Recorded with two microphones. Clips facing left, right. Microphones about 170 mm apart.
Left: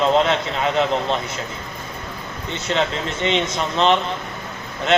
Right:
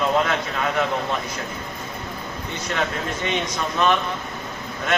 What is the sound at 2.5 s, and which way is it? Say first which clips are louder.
A man's voice: left 4 dB; 25° left (ahead or behind).